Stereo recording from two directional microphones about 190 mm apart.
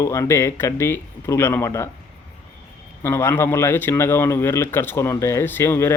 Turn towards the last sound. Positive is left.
turn(degrees=10)  # may be behind; listen again after turning